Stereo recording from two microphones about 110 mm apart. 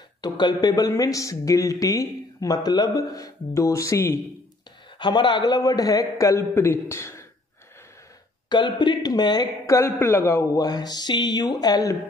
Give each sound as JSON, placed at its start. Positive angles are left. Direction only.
{"t": 0.2, "sound": "speech", "side_deg": 40}
{"t": 4.9, "sound": "speech", "side_deg": 45}
{"t": 8.5, "sound": "speech", "side_deg": 40}
{"t": 9.8, "sound": "a man's voice", "side_deg": 25}
{"t": 10.6, "sound": "speech", "side_deg": 35}